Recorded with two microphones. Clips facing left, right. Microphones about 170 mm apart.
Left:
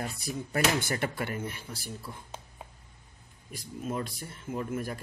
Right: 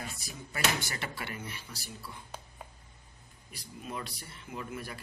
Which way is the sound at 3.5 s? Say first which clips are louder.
Left 7 dB; 45° left (ahead or behind).